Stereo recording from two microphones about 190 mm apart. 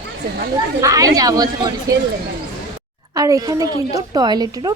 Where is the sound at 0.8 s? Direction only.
20° right (ahead or behind).